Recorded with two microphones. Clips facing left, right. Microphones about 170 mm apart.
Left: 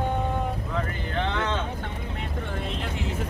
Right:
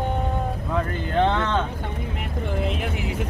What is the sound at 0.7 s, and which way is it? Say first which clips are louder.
Vehicle: right 5 dB; 55° right (ahead or behind).